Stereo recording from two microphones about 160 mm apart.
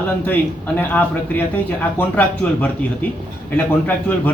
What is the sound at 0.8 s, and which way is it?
A man's voice, 10° left (ahead or behind).